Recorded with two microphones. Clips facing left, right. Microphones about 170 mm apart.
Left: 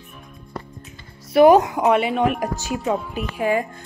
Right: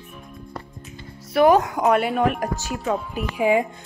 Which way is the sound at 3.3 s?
15° right (ahead or behind).